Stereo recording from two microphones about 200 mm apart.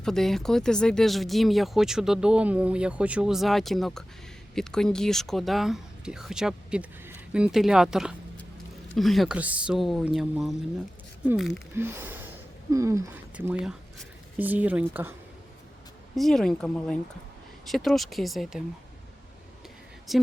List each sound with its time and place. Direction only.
0.0 s speech: centre (ahead or behind)
11.7 s speech: 10° right (ahead or behind)
16.1 s speech: centre (ahead or behind)
20.1 s speech: centre (ahead or behind)